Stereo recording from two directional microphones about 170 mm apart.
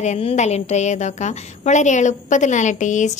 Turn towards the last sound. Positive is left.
turn(degrees=45)  # may be behind; listen again after turning